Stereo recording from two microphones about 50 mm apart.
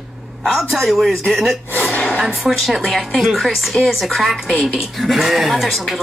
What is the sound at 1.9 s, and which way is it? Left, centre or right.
Gasp, left.